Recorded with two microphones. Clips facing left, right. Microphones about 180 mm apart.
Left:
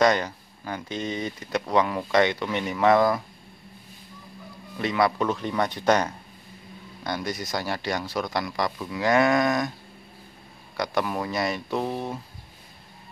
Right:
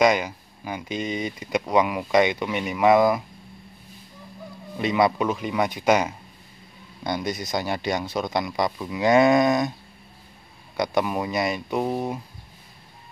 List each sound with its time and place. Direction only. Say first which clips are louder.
0.0 s speech: right 1 dB; 10° right (ahead or behind)
4.7 s speech: right 2 dB; 20° right (ahead or behind)
10.8 s speech: right 3 dB; 15° right (ahead or behind)